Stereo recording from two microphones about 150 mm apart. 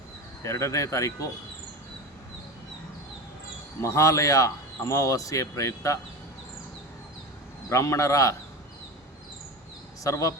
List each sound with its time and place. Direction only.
0.4 s a man's voice: 20° left (ahead or behind)
3.8 s a man's voice: 20° left (ahead or behind)
7.7 s a man's voice: 20° left (ahead or behind)
10.0 s a man's voice: 20° left (ahead or behind)